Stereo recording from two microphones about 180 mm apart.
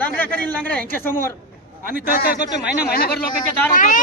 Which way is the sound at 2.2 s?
60° left (ahead or behind).